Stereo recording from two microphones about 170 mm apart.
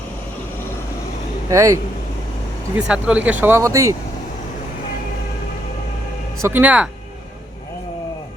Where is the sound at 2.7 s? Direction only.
5° right (ahead or behind).